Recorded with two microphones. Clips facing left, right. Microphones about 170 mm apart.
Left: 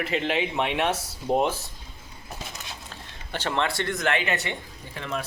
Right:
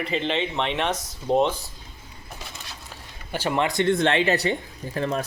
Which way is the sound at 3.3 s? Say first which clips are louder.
Right 3 dB; 10° right (ahead or behind).